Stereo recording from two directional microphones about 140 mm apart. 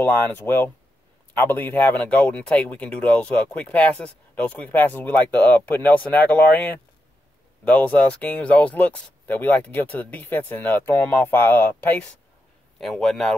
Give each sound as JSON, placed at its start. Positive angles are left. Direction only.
{"t": 0.0, "sound": "speech", "side_deg": 15}